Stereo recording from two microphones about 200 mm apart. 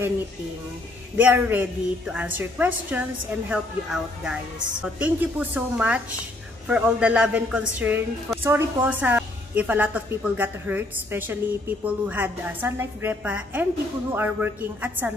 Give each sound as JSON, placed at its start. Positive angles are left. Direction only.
{"t": 1.1, "sound": "a woman's voice", "side_deg": -10}